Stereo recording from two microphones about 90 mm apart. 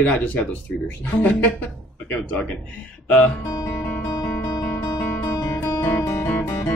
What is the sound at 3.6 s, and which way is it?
Guitar, 25° left (ahead or behind).